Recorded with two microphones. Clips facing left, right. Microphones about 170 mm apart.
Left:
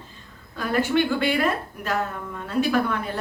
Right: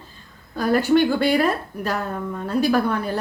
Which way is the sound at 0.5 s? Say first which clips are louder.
Right 5 dB; 40° right (ahead or behind).